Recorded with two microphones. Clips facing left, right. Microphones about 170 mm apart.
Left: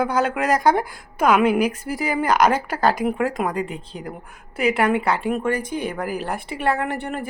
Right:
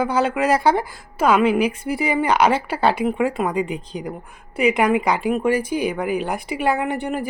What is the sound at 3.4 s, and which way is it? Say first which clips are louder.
Speech: right 2 dB; 10° left (ahead or behind).